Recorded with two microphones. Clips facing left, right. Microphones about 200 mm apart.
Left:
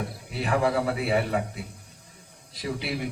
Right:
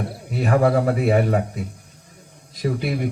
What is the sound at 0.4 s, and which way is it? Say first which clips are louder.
A man's voice: right 6 dB; 45° right (ahead or behind).